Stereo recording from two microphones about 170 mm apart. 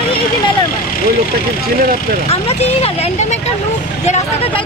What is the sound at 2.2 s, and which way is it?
Speech, 35° left (ahead or behind).